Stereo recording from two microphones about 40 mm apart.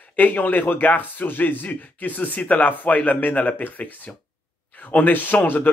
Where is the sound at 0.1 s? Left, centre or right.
Left.